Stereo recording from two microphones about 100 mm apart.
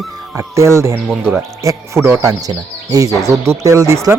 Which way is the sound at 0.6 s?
30° right (ahead or behind).